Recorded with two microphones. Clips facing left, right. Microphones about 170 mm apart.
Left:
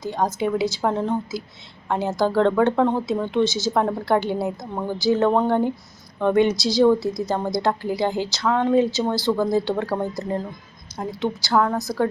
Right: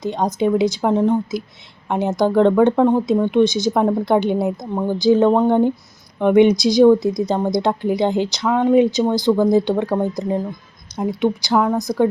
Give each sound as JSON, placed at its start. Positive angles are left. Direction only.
{"t": 0.0, "sound": "speech", "side_deg": -20}